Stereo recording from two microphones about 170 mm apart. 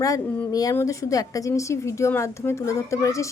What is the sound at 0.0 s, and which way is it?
A woman's voice, 20° left (ahead or behind).